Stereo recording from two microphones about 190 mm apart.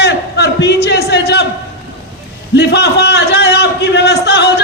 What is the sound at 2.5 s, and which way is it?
A man's voice, 65° left (ahead or behind).